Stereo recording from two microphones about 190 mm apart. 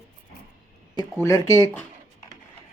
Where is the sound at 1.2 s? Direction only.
15° left (ahead or behind).